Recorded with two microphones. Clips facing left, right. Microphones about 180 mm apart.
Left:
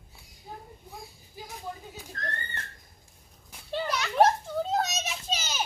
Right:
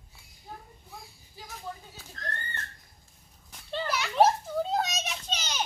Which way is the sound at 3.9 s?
Centre (ahead or behind).